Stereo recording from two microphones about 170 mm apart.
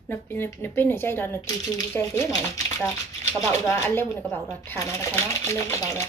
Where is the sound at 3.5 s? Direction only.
15° left (ahead or behind).